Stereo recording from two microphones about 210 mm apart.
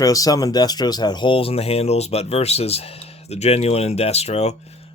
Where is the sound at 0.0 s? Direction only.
15° left (ahead or behind).